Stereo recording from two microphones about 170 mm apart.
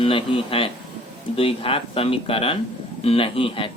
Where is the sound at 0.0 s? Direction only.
30° left (ahead or behind).